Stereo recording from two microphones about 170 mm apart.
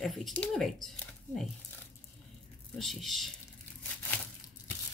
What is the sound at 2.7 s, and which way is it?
Speech, centre (ahead or behind).